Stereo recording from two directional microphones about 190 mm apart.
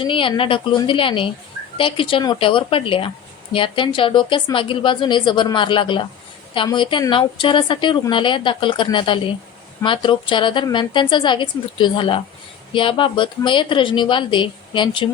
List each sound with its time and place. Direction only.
0.0 s a woman's voice: 25° left (ahead or behind)